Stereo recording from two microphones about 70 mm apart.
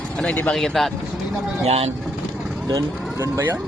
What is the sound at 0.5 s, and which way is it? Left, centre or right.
Speech, centre.